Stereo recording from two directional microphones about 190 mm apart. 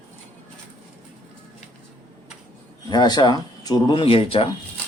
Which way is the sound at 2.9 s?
20° left (ahead or behind).